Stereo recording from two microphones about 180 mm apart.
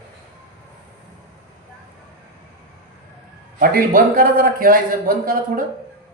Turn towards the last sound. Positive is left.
turn(degrees=-50)  # may be behind; listen again after turning